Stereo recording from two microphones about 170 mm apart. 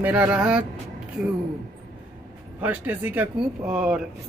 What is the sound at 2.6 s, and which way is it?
A man's voice, 10° right (ahead or behind).